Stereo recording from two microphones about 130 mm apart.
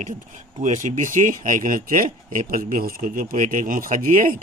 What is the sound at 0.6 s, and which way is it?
Speech, 80° right.